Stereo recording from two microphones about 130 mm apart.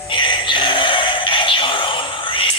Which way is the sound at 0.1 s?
40° left (ahead or behind).